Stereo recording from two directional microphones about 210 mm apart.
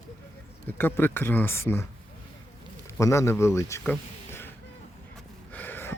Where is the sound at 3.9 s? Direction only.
10° left (ahead or behind).